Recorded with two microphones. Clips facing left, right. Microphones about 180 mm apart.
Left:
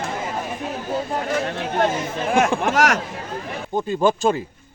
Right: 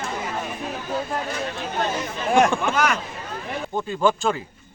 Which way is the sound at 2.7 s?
90° left.